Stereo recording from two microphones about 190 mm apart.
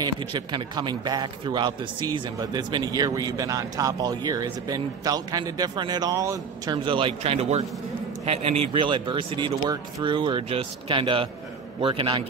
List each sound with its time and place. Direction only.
0.0 s a man's voice: 25° right (ahead or behind)